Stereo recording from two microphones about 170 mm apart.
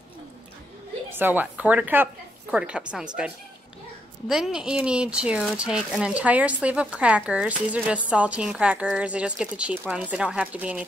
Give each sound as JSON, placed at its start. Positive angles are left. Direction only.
{"t": 1.1, "sound": "speech", "side_deg": -10}
{"t": 4.3, "sound": "speech", "side_deg": -5}